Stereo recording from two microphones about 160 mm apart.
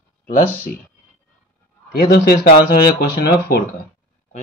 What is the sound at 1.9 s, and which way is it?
Speech, 70° left (ahead or behind).